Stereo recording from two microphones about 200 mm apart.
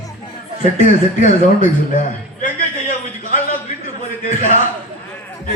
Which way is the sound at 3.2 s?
40° left (ahead or behind).